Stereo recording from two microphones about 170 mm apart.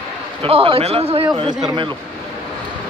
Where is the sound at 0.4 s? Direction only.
30° right (ahead or behind).